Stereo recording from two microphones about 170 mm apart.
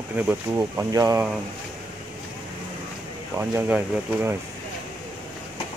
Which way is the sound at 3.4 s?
10° right (ahead or behind).